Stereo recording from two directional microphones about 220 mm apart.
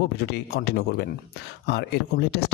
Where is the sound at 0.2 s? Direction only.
45° left (ahead or behind).